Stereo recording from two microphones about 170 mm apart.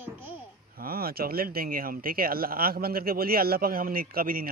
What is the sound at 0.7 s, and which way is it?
Speech, 60° right (ahead or behind).